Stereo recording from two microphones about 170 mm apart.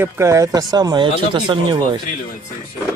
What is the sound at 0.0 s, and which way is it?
Speech, 15° right (ahead or behind).